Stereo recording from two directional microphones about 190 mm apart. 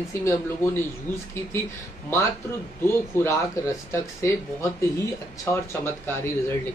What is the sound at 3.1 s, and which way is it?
Speech, 15° left (ahead or behind).